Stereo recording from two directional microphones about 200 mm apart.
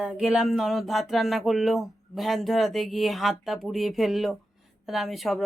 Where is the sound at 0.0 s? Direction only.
5° right (ahead or behind).